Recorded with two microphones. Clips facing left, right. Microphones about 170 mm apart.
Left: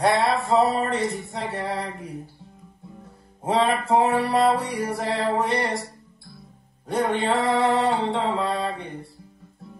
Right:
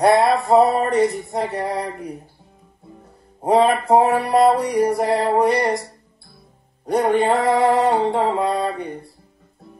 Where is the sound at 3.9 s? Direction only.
50° right (ahead or behind).